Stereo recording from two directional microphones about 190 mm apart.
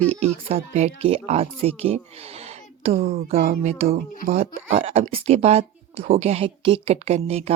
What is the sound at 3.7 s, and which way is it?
Speech, 35° right (ahead or behind).